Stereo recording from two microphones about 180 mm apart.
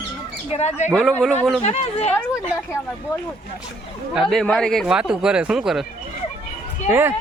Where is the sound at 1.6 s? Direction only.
35° left (ahead or behind).